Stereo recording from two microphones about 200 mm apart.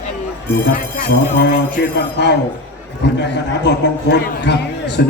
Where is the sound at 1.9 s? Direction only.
60° left (ahead or behind).